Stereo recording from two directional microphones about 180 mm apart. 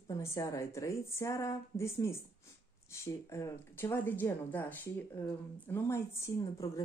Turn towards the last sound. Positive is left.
turn(degrees=15)  # may be behind; listen again after turning